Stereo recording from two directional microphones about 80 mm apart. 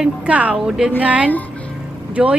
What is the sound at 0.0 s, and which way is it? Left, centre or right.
A woman's voice, centre.